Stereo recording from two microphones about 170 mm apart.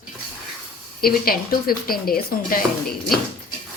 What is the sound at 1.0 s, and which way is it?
Speech, 60° left (ahead or behind).